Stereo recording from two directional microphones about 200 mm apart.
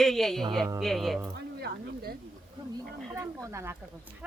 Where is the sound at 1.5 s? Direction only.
50° right (ahead or behind).